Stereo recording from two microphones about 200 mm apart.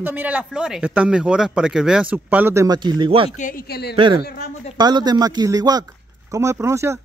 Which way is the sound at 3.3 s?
45° left (ahead or behind).